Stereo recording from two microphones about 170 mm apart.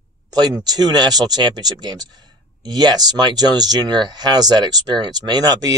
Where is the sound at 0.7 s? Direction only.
25° right (ahead or behind).